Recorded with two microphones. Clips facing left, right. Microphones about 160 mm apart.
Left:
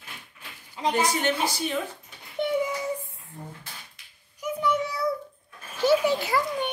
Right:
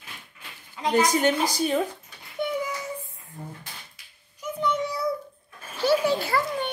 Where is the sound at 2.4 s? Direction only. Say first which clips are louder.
Left 1 dB; 25° left (ahead or behind).